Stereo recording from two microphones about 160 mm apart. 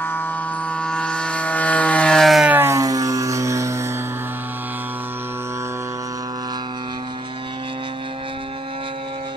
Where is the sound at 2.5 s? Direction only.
15° right (ahead or behind).